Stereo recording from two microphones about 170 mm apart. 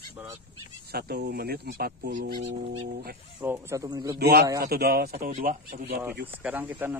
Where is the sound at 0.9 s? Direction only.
65° right (ahead or behind).